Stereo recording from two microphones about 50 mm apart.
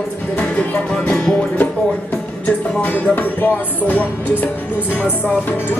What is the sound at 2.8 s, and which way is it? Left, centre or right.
Music, left.